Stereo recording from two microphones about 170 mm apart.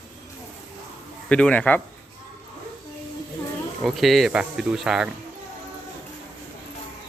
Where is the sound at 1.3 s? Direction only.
5° left (ahead or behind).